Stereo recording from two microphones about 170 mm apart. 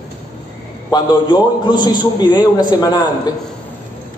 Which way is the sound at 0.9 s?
25° left (ahead or behind).